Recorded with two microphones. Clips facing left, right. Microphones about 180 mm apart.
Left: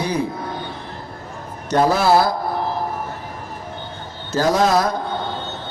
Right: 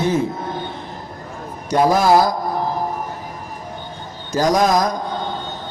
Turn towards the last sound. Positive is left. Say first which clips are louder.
# right 1 dB
turn(degrees=-15)  # may be behind; listen again after turning